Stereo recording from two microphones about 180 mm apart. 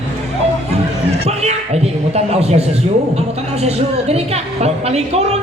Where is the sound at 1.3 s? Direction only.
35° right (ahead or behind).